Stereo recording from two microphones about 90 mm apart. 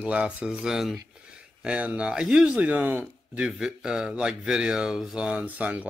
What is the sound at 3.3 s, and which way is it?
Speech, 5° right (ahead or behind).